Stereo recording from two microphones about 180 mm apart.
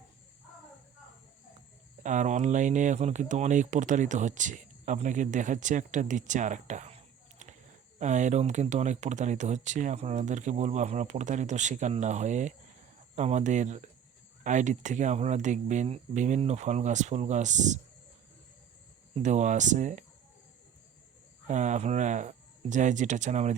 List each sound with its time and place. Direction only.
2.0 s speech: 45° right (ahead or behind)
19.1 s speech: 40° right (ahead or behind)
21.4 s speech: 40° right (ahead or behind)